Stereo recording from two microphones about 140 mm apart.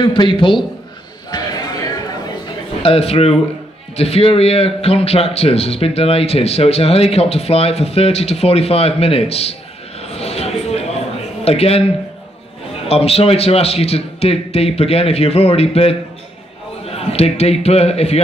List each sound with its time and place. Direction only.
0.0 s a man's voice: 35° left (ahead or behind)
1.3 s a sound: 35° left (ahead or behind)
2.9 s a man's voice: 45° left (ahead or behind)
10.0 s a sound: 45° left (ahead or behind)
11.4 s a man's voice: 45° left (ahead or behind)
12.8 s a man's voice: 45° left (ahead or behind)